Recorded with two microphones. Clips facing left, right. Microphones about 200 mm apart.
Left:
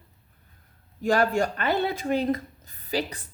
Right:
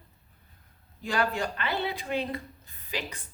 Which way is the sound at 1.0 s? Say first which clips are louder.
Left 7 dB; 45° left (ahead or behind).